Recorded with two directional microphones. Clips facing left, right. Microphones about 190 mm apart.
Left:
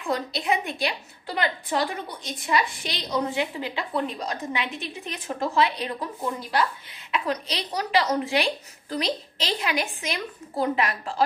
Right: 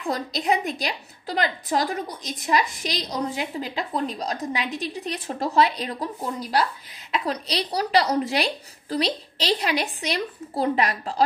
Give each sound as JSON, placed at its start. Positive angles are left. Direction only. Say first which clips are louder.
{"t": 0.0, "sound": "a woman's voice", "louder": "right 1 dB", "side_deg": -40}